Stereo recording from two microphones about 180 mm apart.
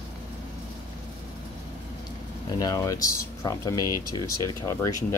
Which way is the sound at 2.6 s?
20° left (ahead or behind).